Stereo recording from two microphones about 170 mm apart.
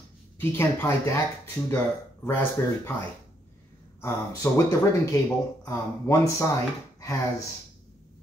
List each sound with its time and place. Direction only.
0.4 s speech: 15° left (ahead or behind)
4.0 s speech: 20° left (ahead or behind)